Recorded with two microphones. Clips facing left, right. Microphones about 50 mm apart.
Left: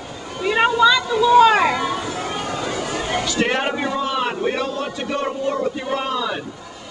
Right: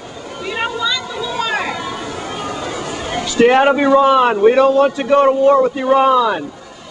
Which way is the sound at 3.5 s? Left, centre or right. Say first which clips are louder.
Right 11 dB; right.